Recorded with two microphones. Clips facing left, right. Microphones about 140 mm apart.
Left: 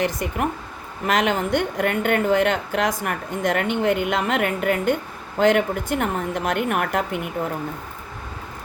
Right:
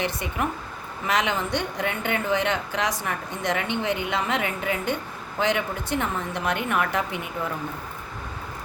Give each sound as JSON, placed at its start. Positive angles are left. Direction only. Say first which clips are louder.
{"t": 0.0, "sound": "speech", "louder": "left 4 dB", "side_deg": 45}